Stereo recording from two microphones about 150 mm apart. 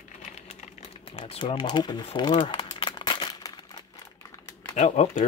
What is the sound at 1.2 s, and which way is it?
Speech, 40° left (ahead or behind).